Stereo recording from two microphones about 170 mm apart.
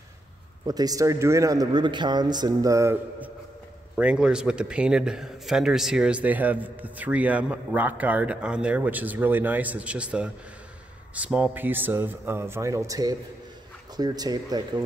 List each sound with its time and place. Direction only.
0.7 s a man's voice: 20° right (ahead or behind)